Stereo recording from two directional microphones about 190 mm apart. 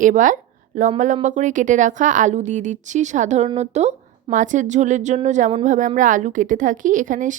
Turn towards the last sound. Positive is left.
turn(degrees=-45)  # may be behind; listen again after turning